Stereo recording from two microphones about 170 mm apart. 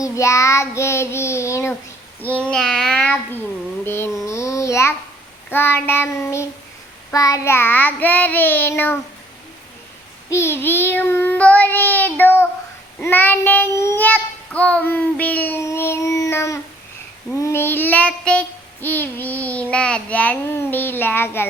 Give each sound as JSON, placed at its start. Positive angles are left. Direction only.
{"t": 0.0, "sound": "child singing", "side_deg": 20}
{"t": 2.3, "sound": "child singing", "side_deg": 5}
{"t": 4.3, "sound": "babbling", "side_deg": 15}
{"t": 5.5, "sound": "child singing", "side_deg": 15}
{"t": 10.2, "sound": "child singing", "side_deg": 15}